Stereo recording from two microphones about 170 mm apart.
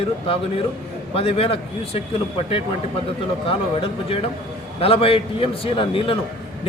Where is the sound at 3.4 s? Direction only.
35° left (ahead or behind).